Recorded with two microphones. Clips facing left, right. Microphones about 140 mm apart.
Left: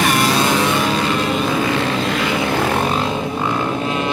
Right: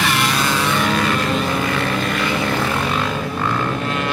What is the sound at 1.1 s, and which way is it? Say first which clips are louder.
Vehicle: left 1 dB; 5° left (ahead or behind).